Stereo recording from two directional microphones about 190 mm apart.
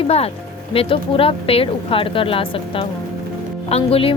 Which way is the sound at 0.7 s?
30° left (ahead or behind).